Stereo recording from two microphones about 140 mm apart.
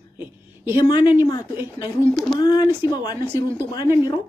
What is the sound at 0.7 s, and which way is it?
Speech, 30° left (ahead or behind).